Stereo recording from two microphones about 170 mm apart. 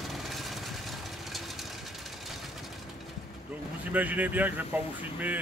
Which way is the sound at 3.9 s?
10° right (ahead or behind).